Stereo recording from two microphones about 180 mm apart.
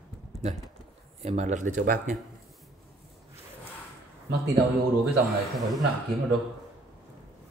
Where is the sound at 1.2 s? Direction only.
40° right (ahead or behind).